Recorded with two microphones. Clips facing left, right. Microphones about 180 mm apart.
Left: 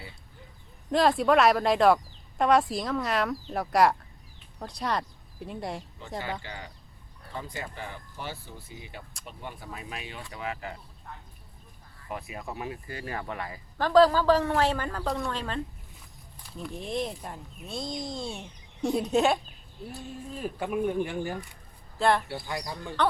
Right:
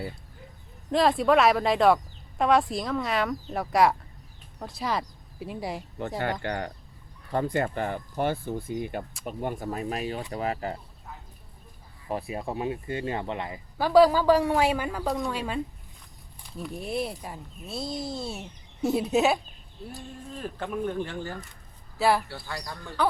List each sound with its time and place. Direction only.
0.9 s speech: centre (ahead or behind)
6.0 s speech: 60° right (ahead or behind); by 10.8 s 40° right (ahead or behind)
12.0 s speech: 30° right (ahead or behind)
13.7 s a man's voice: 10° right (ahead or behind)
20.3 s speech: 10° left (ahead or behind)
21.9 s speech: 5° right (ahead or behind)
22.3 s speech: 20° left (ahead or behind)